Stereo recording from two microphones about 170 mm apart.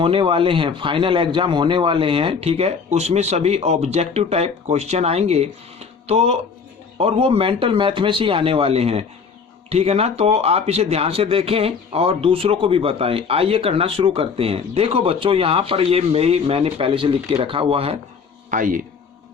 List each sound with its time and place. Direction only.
0.0 s speech: 30° right (ahead or behind)
18.5 s speech: 55° right (ahead or behind)